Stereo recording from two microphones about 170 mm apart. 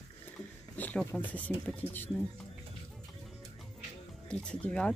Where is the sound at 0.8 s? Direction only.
10° left (ahead or behind).